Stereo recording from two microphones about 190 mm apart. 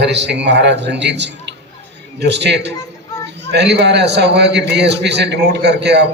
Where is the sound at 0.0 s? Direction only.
65° right (ahead or behind).